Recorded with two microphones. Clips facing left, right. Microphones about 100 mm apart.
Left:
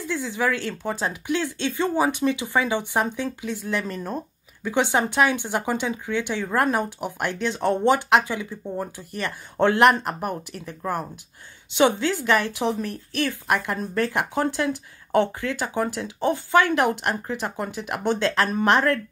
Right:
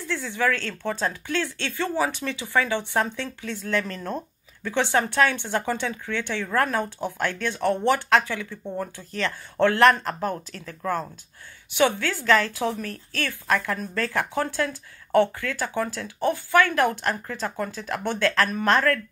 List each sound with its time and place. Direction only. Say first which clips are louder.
0.0 s speech: left 1 dB; 15° left (ahead or behind)